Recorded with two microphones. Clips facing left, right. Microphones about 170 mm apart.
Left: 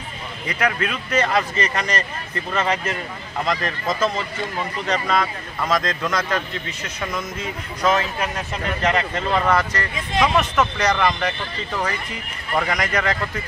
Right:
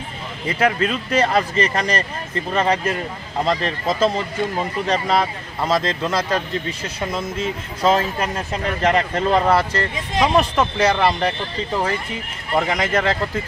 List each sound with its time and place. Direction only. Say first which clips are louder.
0.5 s speech: right 4 dB; 30° right (ahead or behind)